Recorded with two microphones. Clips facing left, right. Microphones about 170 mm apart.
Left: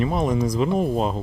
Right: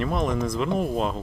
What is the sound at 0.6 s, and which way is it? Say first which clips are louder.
Speech: left 2 dB; 35° left (ahead or behind).